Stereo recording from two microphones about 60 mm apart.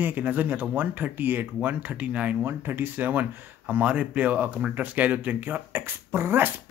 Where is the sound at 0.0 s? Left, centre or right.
Right.